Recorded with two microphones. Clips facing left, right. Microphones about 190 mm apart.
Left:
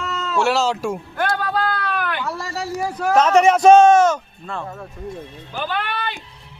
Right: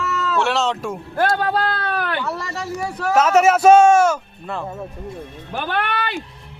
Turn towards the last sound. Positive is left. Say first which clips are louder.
# right 3 dB
turn(degrees=-65)  # may be behind; listen again after turning